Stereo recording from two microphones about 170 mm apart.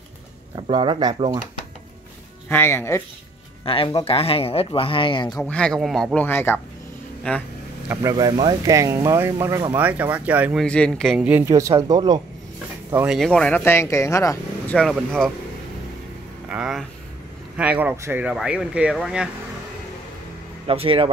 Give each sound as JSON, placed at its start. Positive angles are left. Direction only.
{"t": 0.6, "sound": "speech", "side_deg": -25}
{"t": 2.5, "sound": "speech", "side_deg": 15}
{"t": 3.6, "sound": "speech", "side_deg": 30}
{"t": 5.3, "sound": "speech", "side_deg": 5}
{"t": 7.9, "sound": "speech", "side_deg": -20}
{"t": 10.6, "sound": "speech", "side_deg": 5}
{"t": 11.1, "sound": "speech", "side_deg": -10}
{"t": 12.9, "sound": "speech", "side_deg": -5}
{"t": 14.8, "sound": "speech", "side_deg": 0}
{"t": 16.4, "sound": "speech", "side_deg": -5}
{"t": 20.6, "sound": "speech", "side_deg": -35}